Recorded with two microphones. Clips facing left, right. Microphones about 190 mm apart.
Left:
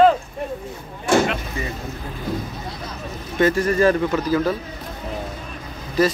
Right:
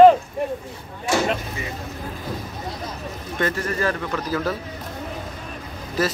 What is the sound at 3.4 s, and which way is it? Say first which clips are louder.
Speech: left 6 dB; 5° left (ahead or behind).